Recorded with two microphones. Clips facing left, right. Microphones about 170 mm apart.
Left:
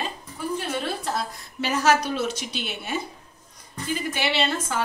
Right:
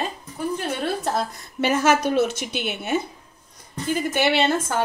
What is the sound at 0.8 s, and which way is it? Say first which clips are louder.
Speech: right 4 dB; 55° right (ahead or behind).